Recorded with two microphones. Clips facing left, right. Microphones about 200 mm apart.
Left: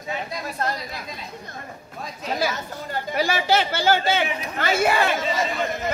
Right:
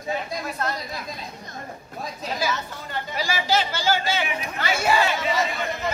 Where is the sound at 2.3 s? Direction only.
50° left (ahead or behind).